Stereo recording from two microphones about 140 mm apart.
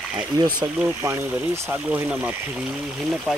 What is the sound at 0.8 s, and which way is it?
Speech, 15° right (ahead or behind).